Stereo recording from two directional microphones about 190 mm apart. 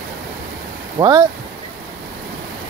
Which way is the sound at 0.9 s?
20° right (ahead or behind).